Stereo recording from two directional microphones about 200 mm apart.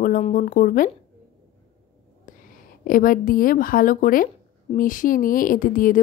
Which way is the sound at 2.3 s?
40° left (ahead or behind).